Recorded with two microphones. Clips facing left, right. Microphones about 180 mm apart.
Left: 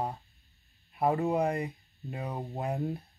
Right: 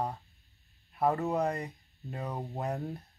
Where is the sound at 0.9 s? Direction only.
10° left (ahead or behind).